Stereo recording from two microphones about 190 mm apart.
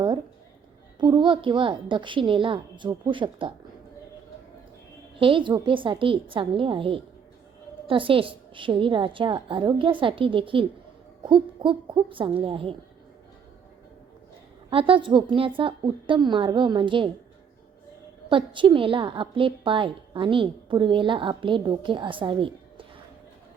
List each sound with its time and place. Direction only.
0.9 s a woman's voice: 25° right (ahead or behind)
5.2 s a woman's voice: 25° right (ahead or behind)
14.7 s a woman's voice: 30° right (ahead or behind)
18.3 s a woman's voice: 25° right (ahead or behind)